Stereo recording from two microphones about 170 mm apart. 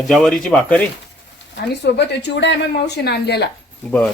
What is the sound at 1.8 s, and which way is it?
Speech, 90° left.